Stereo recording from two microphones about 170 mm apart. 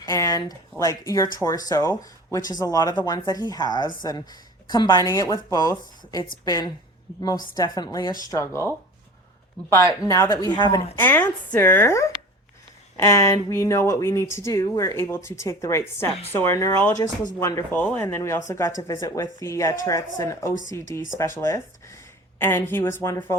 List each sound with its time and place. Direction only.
0.0 s a sound: 20° left (ahead or behind)
0.8 s speech: 20° left (ahead or behind)
10.1 s speech: 20° left (ahead or behind)
10.9 s speech: 10° left (ahead or behind)